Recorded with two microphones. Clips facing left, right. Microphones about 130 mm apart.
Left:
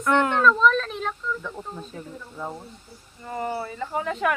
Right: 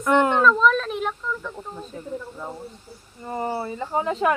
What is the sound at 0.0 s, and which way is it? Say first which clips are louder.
Speech: right 2 dB; 20° right (ahead or behind).